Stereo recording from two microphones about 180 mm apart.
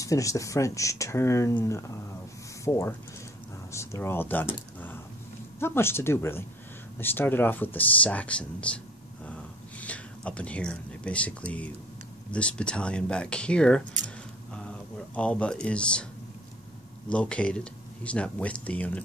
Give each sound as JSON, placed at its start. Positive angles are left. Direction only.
{"t": 0.0, "sound": "speech", "side_deg": 20}
{"t": 14.5, "sound": "a sound", "side_deg": 5}
{"t": 17.1, "sound": "speech", "side_deg": 5}